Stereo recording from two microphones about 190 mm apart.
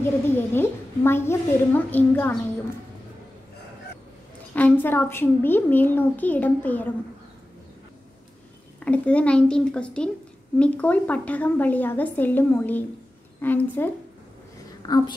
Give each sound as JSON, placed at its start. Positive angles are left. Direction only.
{"t": 0.0, "sound": "a child's voice", "side_deg": 10}
{"t": 4.6, "sound": "a child's voice", "side_deg": 10}
{"t": 8.7, "sound": "a child's voice", "side_deg": 5}
{"t": 14.8, "sound": "a woman's voice", "side_deg": 20}